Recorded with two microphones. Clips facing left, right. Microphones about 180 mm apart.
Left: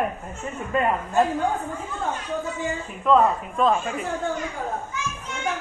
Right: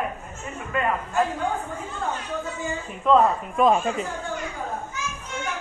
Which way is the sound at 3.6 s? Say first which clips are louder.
Right 2 dB; 20° right (ahead or behind).